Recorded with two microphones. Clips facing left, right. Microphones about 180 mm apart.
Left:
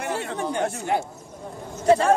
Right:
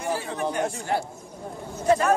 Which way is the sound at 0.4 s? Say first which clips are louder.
Left 1 dB; 25° left (ahead or behind).